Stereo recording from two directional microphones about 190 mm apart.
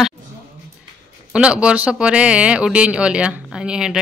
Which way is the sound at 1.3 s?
5° right (ahead or behind).